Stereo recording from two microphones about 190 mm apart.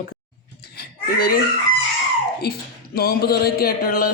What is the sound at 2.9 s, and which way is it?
Speech, 55° left (ahead or behind).